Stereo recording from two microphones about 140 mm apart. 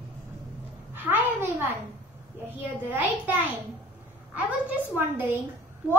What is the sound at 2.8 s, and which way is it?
Speech, 10° right (ahead or behind).